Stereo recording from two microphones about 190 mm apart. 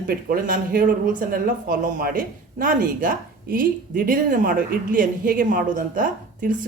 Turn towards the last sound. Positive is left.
turn(degrees=-45)  # may be behind; listen again after turning